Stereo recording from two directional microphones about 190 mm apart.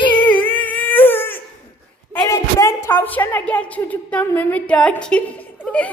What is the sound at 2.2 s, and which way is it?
A woman's voice, 15° left (ahead or behind).